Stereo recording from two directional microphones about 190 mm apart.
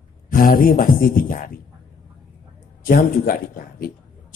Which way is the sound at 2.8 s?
50° left (ahead or behind).